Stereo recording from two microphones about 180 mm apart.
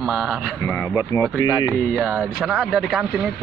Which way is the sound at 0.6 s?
15° left (ahead or behind).